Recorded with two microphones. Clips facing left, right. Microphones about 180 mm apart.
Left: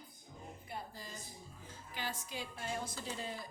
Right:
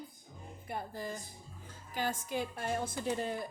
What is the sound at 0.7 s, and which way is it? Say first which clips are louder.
A woman's voice: right 9 dB; 55° right (ahead or behind).